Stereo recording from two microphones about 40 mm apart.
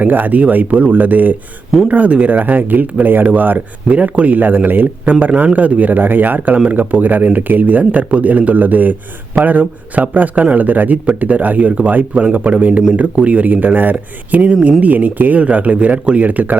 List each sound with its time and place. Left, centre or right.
0.0 s speech: right
1.9 s speech: right
3.8 s speech: right
4.4 s speech: right